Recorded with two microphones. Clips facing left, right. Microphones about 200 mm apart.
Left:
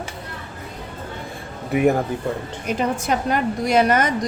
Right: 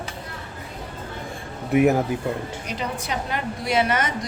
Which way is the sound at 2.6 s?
50° left (ahead or behind).